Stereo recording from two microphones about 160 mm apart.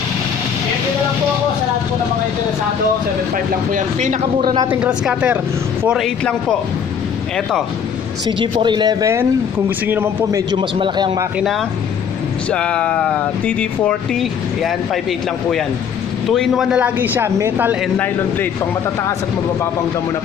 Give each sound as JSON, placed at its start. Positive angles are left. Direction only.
{"t": 3.7, "sound": "speech", "side_deg": -50}
{"t": 4.4, "sound": "a man's voice", "side_deg": -30}
{"t": 4.6, "sound": "speech", "side_deg": -10}
{"t": 8.3, "sound": "a man's voice", "side_deg": -30}
{"t": 11.3, "sound": "speech", "side_deg": 0}
{"t": 16.3, "sound": "speech", "side_deg": 0}
{"t": 17.9, "sound": "speech", "side_deg": 10}